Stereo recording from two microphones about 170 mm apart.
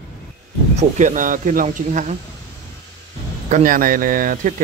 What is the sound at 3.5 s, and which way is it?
Speech, 55° right (ahead or behind).